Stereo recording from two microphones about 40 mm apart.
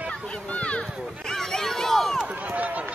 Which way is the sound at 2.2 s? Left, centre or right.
Right.